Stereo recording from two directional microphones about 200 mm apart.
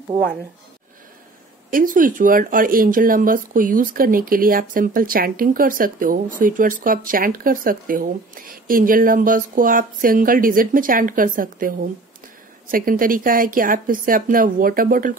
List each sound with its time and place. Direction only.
1.7 s speech: 45° right (ahead or behind)